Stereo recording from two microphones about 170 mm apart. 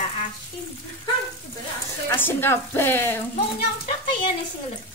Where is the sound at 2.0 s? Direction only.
10° left (ahead or behind).